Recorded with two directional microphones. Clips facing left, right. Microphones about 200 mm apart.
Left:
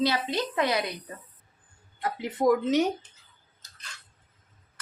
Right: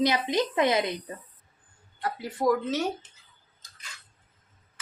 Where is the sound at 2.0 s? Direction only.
20° left (ahead or behind).